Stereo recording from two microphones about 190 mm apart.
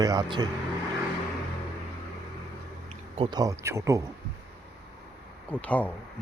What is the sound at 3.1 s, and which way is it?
Speech, 30° right (ahead or behind).